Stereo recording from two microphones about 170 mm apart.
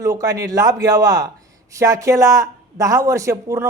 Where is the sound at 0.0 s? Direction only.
20° right (ahead or behind).